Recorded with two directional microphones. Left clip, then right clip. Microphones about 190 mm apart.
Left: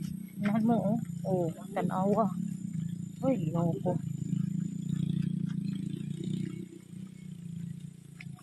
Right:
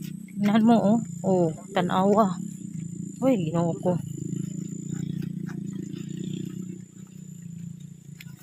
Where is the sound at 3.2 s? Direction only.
40° right (ahead or behind).